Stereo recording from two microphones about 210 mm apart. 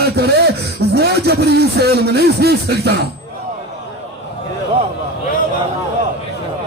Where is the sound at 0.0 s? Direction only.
50° right (ahead or behind).